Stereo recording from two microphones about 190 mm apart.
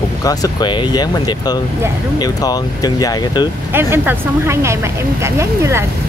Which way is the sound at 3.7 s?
10° right (ahead or behind).